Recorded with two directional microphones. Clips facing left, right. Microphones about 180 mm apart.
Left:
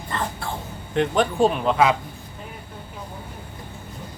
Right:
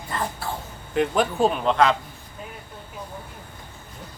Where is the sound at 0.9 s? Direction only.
5° right (ahead or behind).